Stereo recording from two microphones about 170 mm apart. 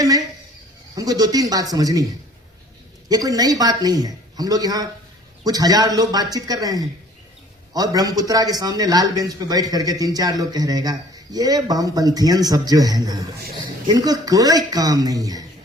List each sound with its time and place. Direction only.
0.9 s a man's voice: 20° right (ahead or behind)
3.1 s a man's voice: 20° right (ahead or behind)